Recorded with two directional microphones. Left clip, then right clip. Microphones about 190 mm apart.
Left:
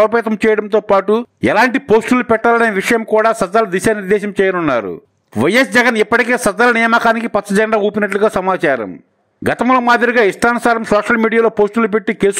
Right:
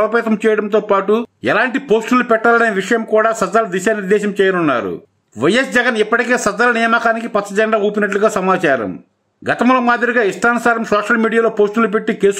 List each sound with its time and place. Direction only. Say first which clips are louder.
0.0 s speech: left 2 dB; 35° left (ahead or behind)